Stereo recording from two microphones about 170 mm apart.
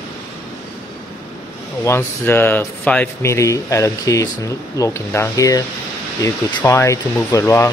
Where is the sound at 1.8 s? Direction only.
15° left (ahead or behind).